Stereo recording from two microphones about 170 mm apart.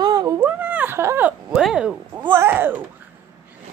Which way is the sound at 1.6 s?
5° right (ahead or behind).